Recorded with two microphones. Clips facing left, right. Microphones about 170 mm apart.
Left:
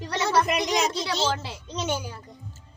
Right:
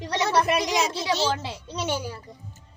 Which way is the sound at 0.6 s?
10° right (ahead or behind).